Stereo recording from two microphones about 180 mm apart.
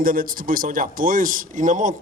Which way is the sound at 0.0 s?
50° right (ahead or behind).